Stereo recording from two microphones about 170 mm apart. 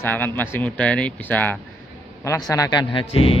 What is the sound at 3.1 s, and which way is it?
Speech, 35° left (ahead or behind).